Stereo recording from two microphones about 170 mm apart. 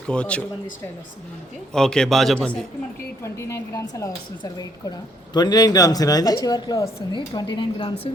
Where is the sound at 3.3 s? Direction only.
15° left (ahead or behind).